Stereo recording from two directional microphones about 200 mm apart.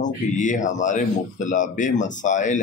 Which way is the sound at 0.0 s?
40° left (ahead or behind).